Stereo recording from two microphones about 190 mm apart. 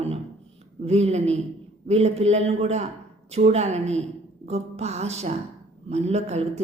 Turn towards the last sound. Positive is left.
turn(degrees=-35)  # may be behind; listen again after turning